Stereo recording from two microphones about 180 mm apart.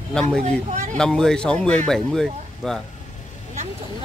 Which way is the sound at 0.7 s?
40° right (ahead or behind).